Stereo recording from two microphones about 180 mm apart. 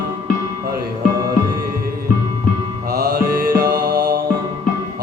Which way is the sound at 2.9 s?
55° right (ahead or behind).